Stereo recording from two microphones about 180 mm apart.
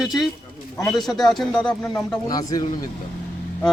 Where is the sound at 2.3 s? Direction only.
20° left (ahead or behind).